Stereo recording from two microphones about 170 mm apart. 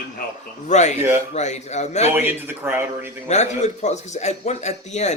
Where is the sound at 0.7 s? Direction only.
45° left (ahead or behind).